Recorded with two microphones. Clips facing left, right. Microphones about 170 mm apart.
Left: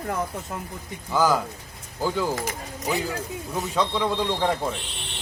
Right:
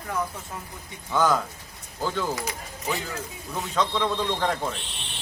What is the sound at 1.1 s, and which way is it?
Speech, 10° left (ahead or behind).